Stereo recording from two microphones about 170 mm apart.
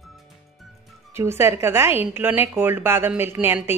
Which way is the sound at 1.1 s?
15° right (ahead or behind).